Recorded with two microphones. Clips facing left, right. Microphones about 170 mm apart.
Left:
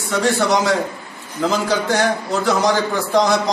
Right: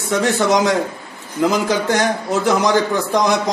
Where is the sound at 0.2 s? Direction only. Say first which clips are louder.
Right 1 dB; 15° right (ahead or behind).